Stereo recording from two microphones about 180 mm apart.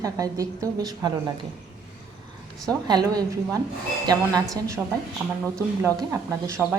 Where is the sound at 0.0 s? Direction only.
20° right (ahead or behind).